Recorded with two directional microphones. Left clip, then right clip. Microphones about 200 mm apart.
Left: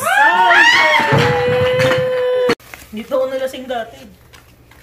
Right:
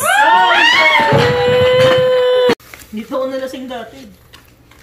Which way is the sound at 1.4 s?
5° left (ahead or behind).